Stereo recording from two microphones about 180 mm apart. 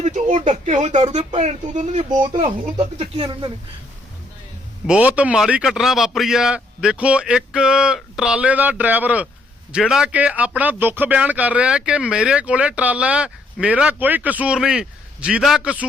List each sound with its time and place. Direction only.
0.0 s a sound: 40° right (ahead or behind)
0.5 s speech: 40° right (ahead or behind)
2.0 s speech: 25° right (ahead or behind)
2.4 s speech: 35° right (ahead or behind)
4.9 s a man's voice: 10° right (ahead or behind)